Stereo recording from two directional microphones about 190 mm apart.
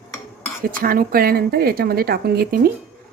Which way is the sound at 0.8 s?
50° right (ahead or behind).